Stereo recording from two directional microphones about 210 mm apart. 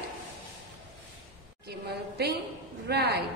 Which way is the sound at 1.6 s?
50° right (ahead or behind).